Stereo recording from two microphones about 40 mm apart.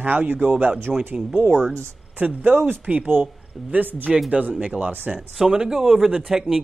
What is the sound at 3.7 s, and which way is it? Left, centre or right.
Speech, right.